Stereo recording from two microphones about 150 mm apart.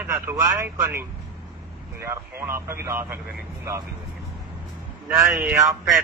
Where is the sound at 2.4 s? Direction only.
15° right (ahead or behind).